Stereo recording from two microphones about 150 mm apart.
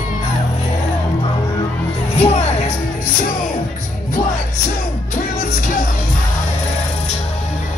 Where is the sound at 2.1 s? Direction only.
45° left (ahead or behind).